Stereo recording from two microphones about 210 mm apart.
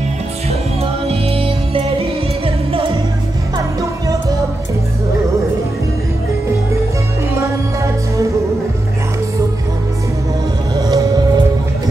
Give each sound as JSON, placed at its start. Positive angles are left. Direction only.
{"t": 1.0, "sound": "music", "side_deg": -25}
{"t": 7.3, "sound": "music", "side_deg": -15}
{"t": 10.8, "sound": "music", "side_deg": -15}